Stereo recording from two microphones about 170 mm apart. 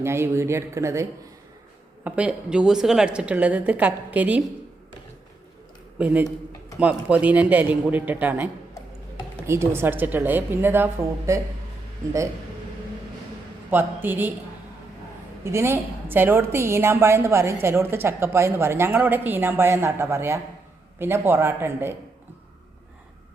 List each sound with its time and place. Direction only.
0.0 s a woman's voice: 15° right (ahead or behind)
2.0 s a woman's voice: 5° right (ahead or behind)
6.0 s a woman's voice: 10° right (ahead or behind)
9.5 s a woman's voice: 15° right (ahead or behind)
13.7 s a woman's voice: 10° right (ahead or behind)
15.4 s a woman's voice: 15° right (ahead or behind)